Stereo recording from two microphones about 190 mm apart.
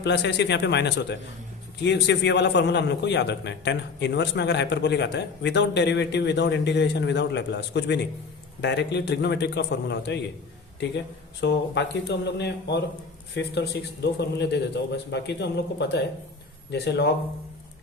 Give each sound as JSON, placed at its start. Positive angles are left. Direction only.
{"t": 0.0, "sound": "a man's voice", "side_deg": 65}